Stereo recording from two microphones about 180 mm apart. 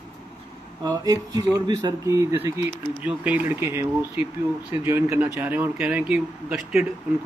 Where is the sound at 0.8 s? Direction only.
20° right (ahead or behind).